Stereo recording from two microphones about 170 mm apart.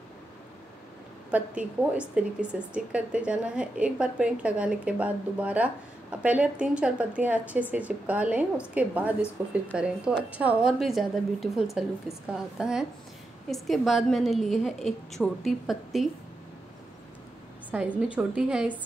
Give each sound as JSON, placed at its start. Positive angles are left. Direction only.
{"t": 1.3, "sound": "a woman's voice", "side_deg": -5}
{"t": 17.6, "sound": "a woman's voice", "side_deg": -10}